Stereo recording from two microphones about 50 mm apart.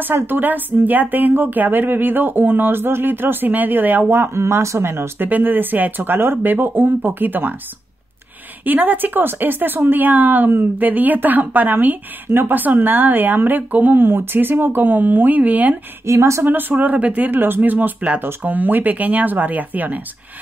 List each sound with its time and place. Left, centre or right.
0.0 s speech: right
4.1 s speech: right
5.3 s speech: right
8.6 s speech: right
16.1 s speech: right
16.4 s speech: right